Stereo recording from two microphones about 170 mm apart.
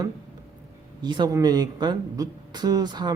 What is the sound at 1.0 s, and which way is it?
Speech, 25° right (ahead or behind).